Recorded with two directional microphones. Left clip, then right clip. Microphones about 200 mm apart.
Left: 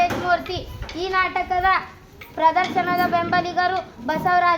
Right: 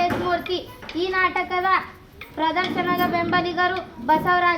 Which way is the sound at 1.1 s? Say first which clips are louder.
Left 1 dB; 30° left (ahead or behind).